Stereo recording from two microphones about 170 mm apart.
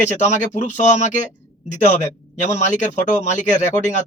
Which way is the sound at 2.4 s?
45° left (ahead or behind).